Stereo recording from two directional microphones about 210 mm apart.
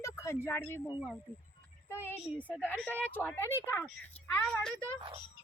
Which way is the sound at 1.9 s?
10° left (ahead or behind).